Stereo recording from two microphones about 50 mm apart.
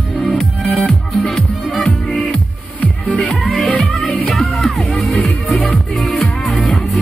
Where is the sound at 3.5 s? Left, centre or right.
Centre.